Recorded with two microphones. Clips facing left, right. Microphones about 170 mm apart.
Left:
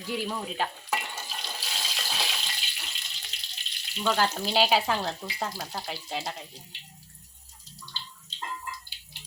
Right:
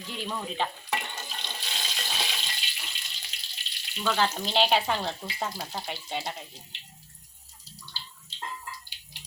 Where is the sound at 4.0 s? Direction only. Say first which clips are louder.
Left 1 dB; centre (ahead or behind).